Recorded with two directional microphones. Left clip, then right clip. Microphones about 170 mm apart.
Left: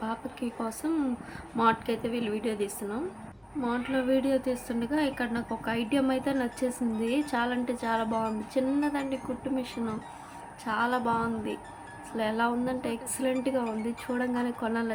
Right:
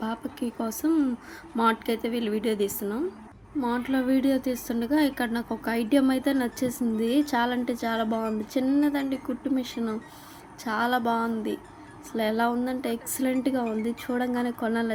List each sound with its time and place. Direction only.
0.0 s speech: 25° right (ahead or behind)